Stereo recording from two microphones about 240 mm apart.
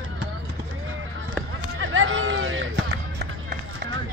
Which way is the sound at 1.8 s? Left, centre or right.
Right.